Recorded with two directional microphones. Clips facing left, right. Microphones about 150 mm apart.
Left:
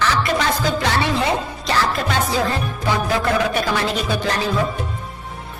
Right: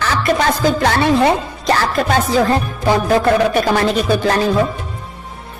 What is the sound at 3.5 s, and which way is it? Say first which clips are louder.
Speech: right 6 dB; 45° right (ahead or behind).